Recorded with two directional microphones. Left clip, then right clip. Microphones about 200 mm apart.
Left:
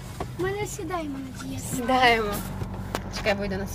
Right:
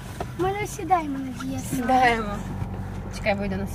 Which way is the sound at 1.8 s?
15° left (ahead or behind).